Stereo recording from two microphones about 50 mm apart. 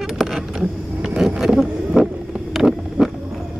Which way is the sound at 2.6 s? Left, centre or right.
Centre.